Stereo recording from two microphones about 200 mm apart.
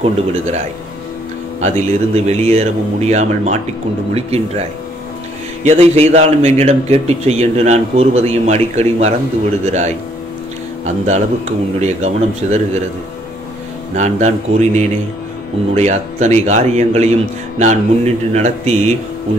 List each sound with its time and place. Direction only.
0.0 s a man's voice: 35° right (ahead or behind)
13.9 s a man's voice: 35° right (ahead or behind)